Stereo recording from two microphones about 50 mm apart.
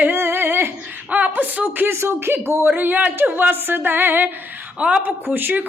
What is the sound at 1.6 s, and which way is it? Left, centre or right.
Speech, right.